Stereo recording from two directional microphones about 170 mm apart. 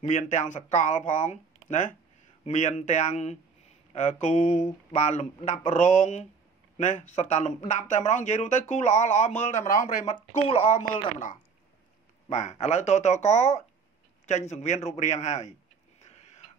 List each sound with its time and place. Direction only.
0.0 s speech: 45° left (ahead or behind)
10.3 s speech: 35° left (ahead or behind)
12.3 s speech: 45° left (ahead or behind)
16.0 s a sound: 40° left (ahead or behind)